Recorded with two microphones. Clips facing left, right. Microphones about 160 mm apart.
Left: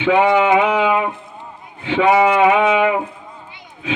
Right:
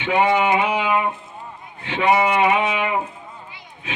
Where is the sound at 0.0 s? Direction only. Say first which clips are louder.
Left 4 dB; 90° left.